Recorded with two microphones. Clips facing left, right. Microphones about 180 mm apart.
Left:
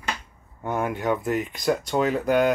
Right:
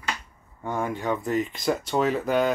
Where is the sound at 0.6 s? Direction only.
15° left (ahead or behind).